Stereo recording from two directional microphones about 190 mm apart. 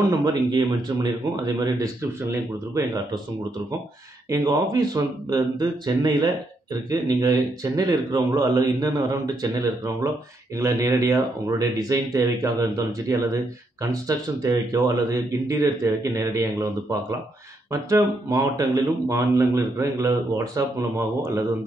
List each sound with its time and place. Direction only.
0.1 s speech: 20° right (ahead or behind)
4.3 s a man's voice: 20° right (ahead or behind)